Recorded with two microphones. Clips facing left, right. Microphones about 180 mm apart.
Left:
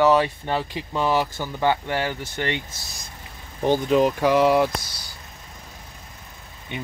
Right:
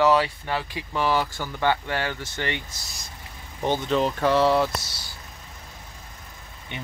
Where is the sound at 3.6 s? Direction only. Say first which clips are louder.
Left 4 dB; 15° left (ahead or behind).